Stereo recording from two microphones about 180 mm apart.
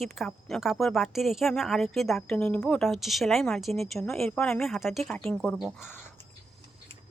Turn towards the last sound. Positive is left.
turn(degrees=0)  # may be behind; listen again after turning